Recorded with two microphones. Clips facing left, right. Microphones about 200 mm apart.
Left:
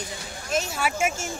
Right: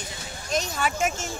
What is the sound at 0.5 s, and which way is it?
Speech, 5° left (ahead or behind).